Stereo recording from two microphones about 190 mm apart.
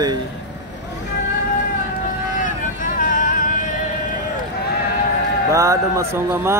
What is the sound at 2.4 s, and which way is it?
Vehicle, 45° left (ahead or behind).